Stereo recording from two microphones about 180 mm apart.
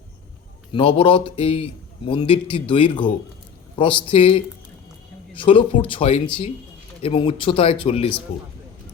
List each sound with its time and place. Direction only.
0.7 s a man's voice: 30° left (ahead or behind)